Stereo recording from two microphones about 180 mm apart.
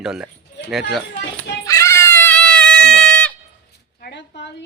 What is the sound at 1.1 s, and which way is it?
Children playing, 55° left (ahead or behind).